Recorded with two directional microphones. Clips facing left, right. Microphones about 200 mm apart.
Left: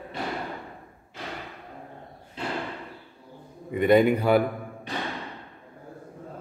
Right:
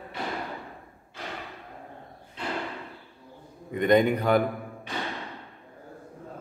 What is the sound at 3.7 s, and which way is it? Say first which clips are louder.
Speech: left 2 dB; 5° left (ahead or behind).